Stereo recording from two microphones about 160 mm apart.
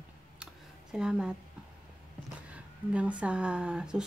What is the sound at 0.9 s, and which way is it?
Speech, 5° right (ahead or behind).